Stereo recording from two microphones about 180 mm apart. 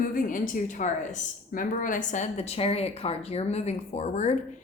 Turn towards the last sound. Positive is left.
turn(degrees=40)  # may be behind; listen again after turning